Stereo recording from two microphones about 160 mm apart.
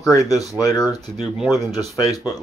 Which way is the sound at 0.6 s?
20° left (ahead or behind).